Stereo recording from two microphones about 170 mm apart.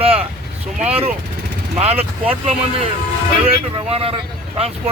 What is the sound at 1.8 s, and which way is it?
Speech, 35° right (ahead or behind).